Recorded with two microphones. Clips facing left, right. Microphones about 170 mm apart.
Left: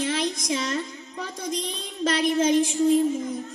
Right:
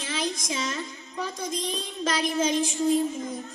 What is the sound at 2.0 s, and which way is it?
Child singing, 60° left (ahead or behind).